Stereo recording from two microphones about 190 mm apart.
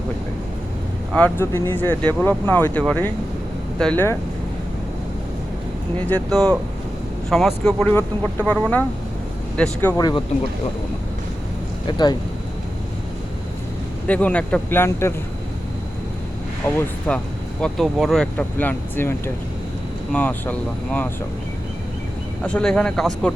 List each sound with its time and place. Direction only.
1.1 s speech: 10° left (ahead or behind)
6.1 s speech: 5° left (ahead or behind)
10.0 s speech: 20° left (ahead or behind)
11.9 s speech: 20° left (ahead or behind)
14.1 s speech: 5° left (ahead or behind)
16.6 s speech: 15° left (ahead or behind)
22.4 s speech: 5° left (ahead or behind)